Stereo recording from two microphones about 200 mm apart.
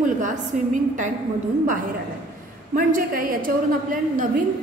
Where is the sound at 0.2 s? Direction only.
40° right (ahead or behind).